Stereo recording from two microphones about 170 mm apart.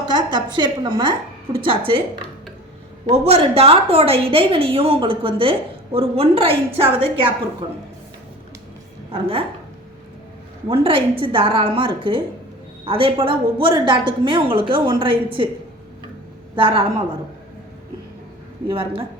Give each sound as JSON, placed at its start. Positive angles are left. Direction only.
{"t": 0.1, "sound": "a woman's voice", "side_deg": -25}
{"t": 3.1, "sound": "a woman's voice", "side_deg": -35}
{"t": 9.1, "sound": "a woman's voice", "side_deg": -35}
{"t": 10.7, "sound": "a woman's voice", "side_deg": -30}
{"t": 16.6, "sound": "a woman's voice", "side_deg": -30}
{"t": 18.7, "sound": "a woman's voice", "side_deg": -30}